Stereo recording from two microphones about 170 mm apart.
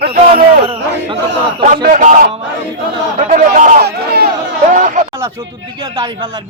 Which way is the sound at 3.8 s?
65° right (ahead or behind).